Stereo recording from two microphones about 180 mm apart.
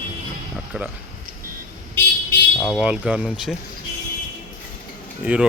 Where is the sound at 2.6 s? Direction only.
Centre (ahead or behind).